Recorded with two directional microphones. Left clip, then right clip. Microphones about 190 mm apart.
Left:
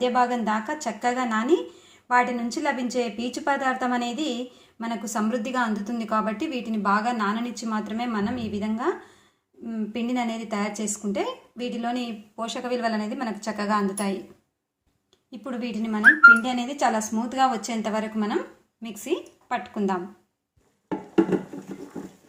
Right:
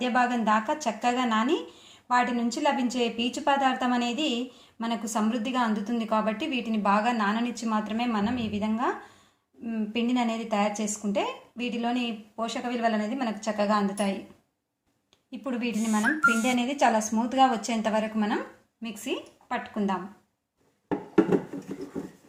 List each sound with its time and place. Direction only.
0.0 s a woman's voice: 5° left (ahead or behind)
15.3 s speech: 5° left (ahead or behind)
18.8 s a woman's voice: 15° left (ahead or behind)